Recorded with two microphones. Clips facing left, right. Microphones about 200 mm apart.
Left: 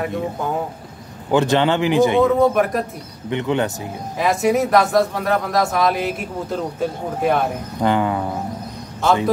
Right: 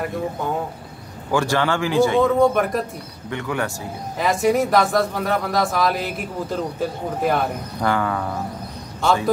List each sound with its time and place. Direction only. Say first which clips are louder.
1.3 s speech: left 4 dB; 20° left (ahead or behind)
2.2 s speech: left 1 dB; centre (ahead or behind)
3.3 s speech: left 5 dB; 20° left (ahead or behind)
4.2 s speech: left 1 dB; centre (ahead or behind)
7.8 s speech: left 3 dB; 20° left (ahead or behind)
9.0 s speech: left 2 dB; centre (ahead or behind)